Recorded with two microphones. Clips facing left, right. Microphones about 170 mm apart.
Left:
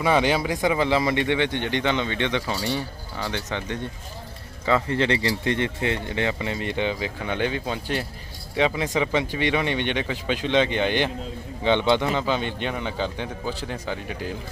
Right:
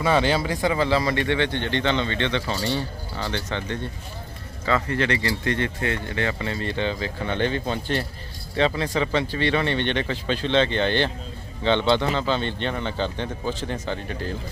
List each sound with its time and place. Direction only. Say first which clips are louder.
0.0 s a man's voice: even; 15° left (ahead or behind)